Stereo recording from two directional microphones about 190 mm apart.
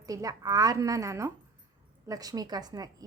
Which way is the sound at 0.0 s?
20° right (ahead or behind).